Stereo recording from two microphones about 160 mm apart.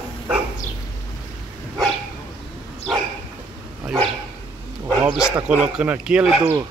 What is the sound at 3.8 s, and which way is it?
Dog, centre (ahead or behind).